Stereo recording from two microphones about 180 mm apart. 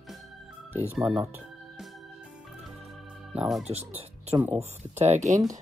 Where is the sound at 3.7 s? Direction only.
35° right (ahead or behind).